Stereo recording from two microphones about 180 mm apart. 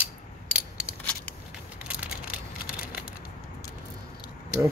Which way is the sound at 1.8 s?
5° right (ahead or behind).